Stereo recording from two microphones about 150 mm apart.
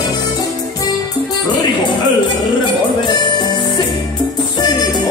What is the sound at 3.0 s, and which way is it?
Music, 30° left (ahead or behind).